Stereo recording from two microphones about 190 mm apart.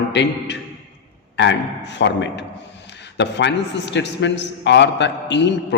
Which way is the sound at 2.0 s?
70° left (ahead or behind).